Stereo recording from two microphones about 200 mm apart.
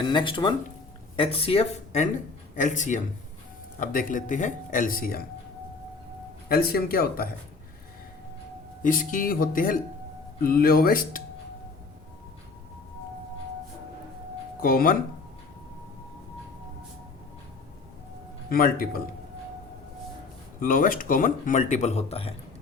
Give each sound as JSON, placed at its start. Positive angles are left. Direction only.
{"t": 0.0, "sound": "speech", "side_deg": 20}
{"t": 6.5, "sound": "speech", "side_deg": 50}
{"t": 8.8, "sound": "speech", "side_deg": 40}
{"t": 14.6, "sound": "speech", "side_deg": 45}
{"t": 18.4, "sound": "speech", "side_deg": 45}
{"t": 20.6, "sound": "speech", "side_deg": 45}